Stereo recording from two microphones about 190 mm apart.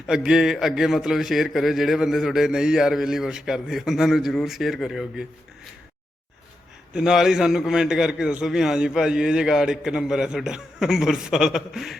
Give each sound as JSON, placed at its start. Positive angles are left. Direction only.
{"t": 0.1, "sound": "a man's voice", "side_deg": -5}
{"t": 6.9, "sound": "a man's voice", "side_deg": -5}